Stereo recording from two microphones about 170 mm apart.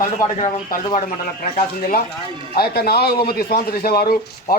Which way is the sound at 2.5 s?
65° left (ahead or behind).